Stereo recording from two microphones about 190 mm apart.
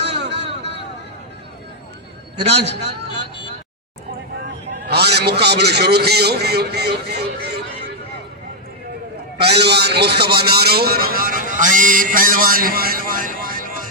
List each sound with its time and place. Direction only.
0.0 s a sound: 65° right (ahead or behind)
2.4 s a man's voice: 65° right (ahead or behind)
4.9 s a man's voice: 60° right (ahead or behind)
9.4 s a man's voice: 60° right (ahead or behind)